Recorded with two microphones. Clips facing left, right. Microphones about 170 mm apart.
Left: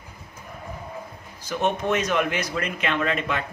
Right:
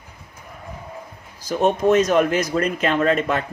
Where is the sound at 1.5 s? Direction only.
35° right (ahead or behind).